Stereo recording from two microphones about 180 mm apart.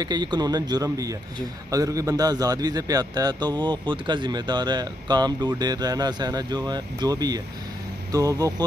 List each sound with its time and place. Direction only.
0.0 s a man's voice: 25° right (ahead or behind)